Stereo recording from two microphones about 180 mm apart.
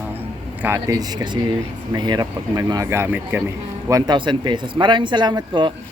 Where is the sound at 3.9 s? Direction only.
25° right (ahead or behind).